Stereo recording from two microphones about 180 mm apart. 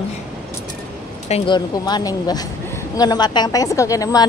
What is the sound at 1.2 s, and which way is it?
A woman's voice, 30° left (ahead or behind).